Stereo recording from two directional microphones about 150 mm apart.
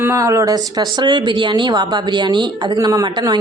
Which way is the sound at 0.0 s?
20° right (ahead or behind).